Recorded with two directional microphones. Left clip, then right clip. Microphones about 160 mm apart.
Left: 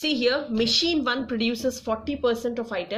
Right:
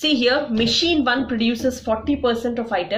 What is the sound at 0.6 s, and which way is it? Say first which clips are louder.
A woman's voice: right 4 dB; 35° left (ahead or behind).